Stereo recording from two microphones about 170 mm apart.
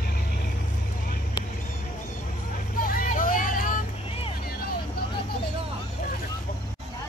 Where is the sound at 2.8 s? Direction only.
55° left (ahead or behind).